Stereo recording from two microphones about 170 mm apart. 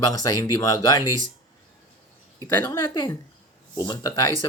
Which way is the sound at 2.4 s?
15° left (ahead or behind).